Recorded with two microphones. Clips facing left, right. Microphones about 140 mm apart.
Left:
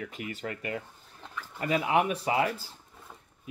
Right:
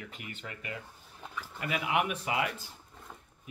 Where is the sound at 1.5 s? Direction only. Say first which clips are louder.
Left 5 dB; 30° left (ahead or behind).